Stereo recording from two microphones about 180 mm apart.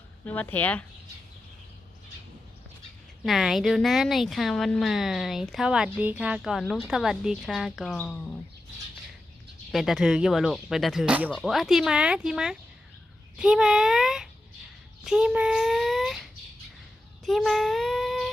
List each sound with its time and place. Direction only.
0.3 s speech: 10° left (ahead or behind)
3.2 s a woman's voice: centre (ahead or behind)
9.7 s a woman's voice: centre (ahead or behind)
17.2 s speech: centre (ahead or behind)